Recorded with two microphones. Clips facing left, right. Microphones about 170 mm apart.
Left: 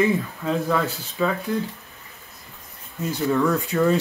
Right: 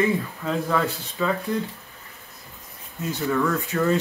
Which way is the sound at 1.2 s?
10° left (ahead or behind).